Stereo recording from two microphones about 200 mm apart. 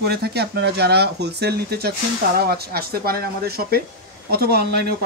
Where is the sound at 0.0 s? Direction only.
50° right (ahead or behind).